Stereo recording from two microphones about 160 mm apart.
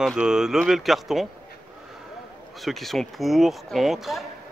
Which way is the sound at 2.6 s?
Centre (ahead or behind).